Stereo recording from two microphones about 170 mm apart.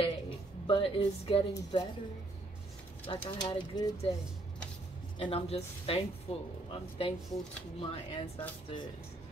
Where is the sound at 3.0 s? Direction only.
30° left (ahead or behind).